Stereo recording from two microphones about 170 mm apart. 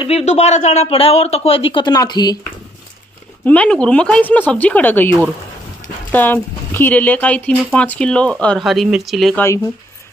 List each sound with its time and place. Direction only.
0.0 s speech: 40° left (ahead or behind); by 2.3 s 25° left (ahead or behind)
3.4 s speech: 5° left (ahead or behind)